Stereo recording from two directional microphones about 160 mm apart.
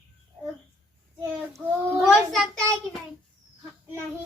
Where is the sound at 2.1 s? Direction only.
Centre (ahead or behind).